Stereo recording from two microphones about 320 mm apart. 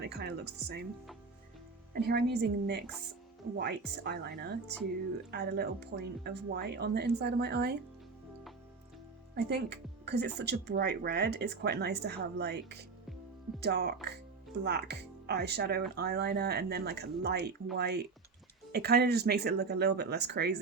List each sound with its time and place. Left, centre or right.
0.0 s speech: right
1.9 s speech: right
9.3 s speech: right